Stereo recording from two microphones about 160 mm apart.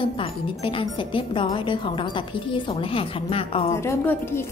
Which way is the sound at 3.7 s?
15° left (ahead or behind).